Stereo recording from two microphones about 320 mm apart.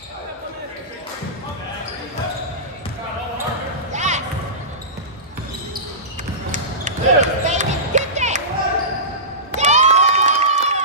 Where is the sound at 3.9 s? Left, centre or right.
Right.